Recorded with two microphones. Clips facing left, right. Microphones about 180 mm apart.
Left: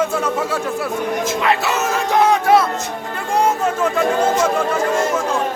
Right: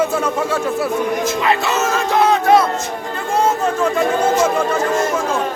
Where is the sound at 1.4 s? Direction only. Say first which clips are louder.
Right 1 dB; 10° left (ahead or behind).